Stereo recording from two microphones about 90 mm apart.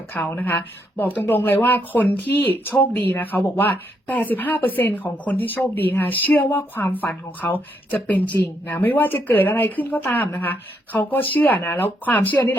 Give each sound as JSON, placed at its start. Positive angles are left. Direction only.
{"t": 0.1, "sound": "speech", "side_deg": 20}